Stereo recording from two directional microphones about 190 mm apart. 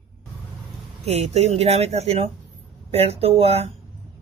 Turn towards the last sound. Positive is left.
turn(degrees=-30)  # may be behind; listen again after turning